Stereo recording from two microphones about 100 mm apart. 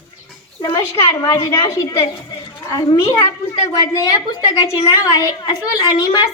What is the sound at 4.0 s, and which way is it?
A woman's voice, 40° left (ahead or behind).